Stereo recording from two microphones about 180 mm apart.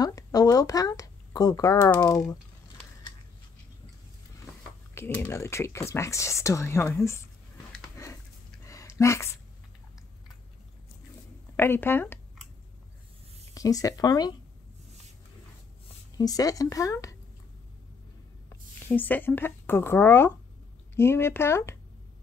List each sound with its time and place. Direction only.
0.0 s a sound: 20° left (ahead or behind)
2.0 s speech: 20° left (ahead or behind)
4.9 s speech: 10° left (ahead or behind)
8.0 s a sound: 15° left (ahead or behind)
11.5 s speech: 10° left (ahead or behind)
13.6 s speech: 20° left (ahead or behind)
16.2 s speech: 20° left (ahead or behind)
18.5 s speech: 10° left (ahead or behind)